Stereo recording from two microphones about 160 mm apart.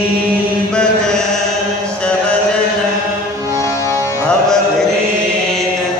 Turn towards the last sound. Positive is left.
turn(degrees=5)  # may be behind; listen again after turning